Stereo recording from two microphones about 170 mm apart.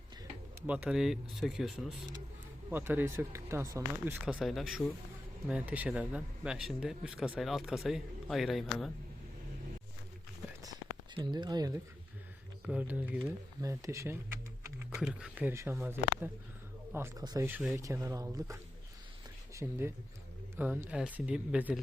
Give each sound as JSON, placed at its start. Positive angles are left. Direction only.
{"t": 0.7, "sound": "speech", "side_deg": -5}
{"t": 2.6, "sound": "speech", "side_deg": -10}
{"t": 10.6, "sound": "a sound", "side_deg": -25}
{"t": 12.6, "sound": "speech", "side_deg": -5}
{"t": 13.6, "sound": "speech", "side_deg": -20}
{"t": 14.9, "sound": "speech", "side_deg": -5}
{"t": 19.6, "sound": "speech", "side_deg": -10}